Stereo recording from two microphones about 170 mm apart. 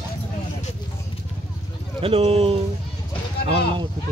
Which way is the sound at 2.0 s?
35° right (ahead or behind).